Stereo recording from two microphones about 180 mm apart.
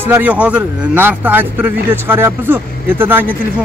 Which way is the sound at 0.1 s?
10° right (ahead or behind).